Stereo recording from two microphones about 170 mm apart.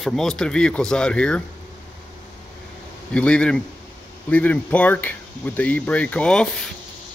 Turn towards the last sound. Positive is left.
turn(degrees=0)  # may be behind; listen again after turning